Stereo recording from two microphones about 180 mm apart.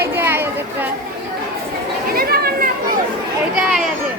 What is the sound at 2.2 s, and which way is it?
Children playing, 55° right (ahead or behind).